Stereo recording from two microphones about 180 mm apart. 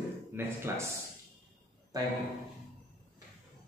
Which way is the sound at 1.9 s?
20° right (ahead or behind).